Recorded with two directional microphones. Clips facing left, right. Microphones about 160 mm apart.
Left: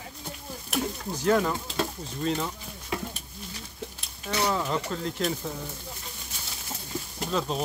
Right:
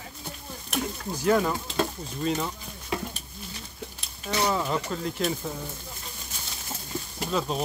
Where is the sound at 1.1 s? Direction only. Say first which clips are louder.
Right 1 dB; 10° right (ahead or behind).